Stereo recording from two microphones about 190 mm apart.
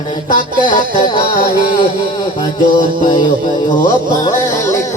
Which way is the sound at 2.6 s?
45° left (ahead or behind).